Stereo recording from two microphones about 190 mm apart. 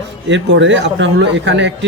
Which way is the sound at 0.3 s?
70° right (ahead or behind).